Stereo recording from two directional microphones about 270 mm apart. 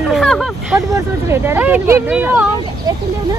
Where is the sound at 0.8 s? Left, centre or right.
Centre.